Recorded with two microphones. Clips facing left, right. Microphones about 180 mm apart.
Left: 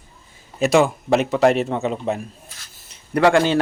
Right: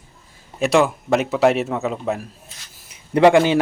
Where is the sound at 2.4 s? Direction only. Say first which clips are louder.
Even; 20° right (ahead or behind).